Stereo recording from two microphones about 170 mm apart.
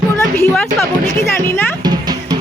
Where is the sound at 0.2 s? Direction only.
10° left (ahead or behind).